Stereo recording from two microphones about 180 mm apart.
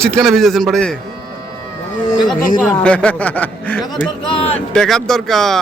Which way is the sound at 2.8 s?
5° left (ahead or behind).